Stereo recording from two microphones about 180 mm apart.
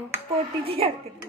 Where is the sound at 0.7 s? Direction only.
30° right (ahead or behind).